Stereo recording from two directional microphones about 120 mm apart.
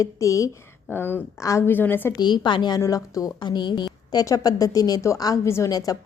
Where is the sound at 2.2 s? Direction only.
40° left (ahead or behind).